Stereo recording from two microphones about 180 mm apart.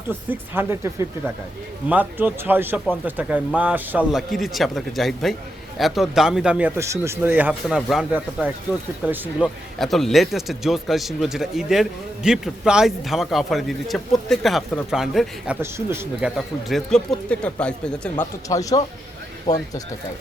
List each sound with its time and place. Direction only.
0.1 s a man's voice: 10° right (ahead or behind)
9.7 s a man's voice: centre (ahead or behind)
15.6 s speech: 15° right (ahead or behind)
16.6 s a man's voice: centre (ahead or behind)
18.4 s speech: 20° left (ahead or behind)